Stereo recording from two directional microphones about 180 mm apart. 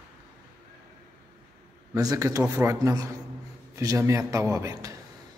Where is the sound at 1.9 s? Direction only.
20° right (ahead or behind).